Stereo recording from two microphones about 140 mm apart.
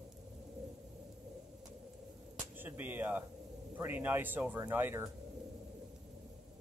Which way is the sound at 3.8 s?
15° right (ahead or behind).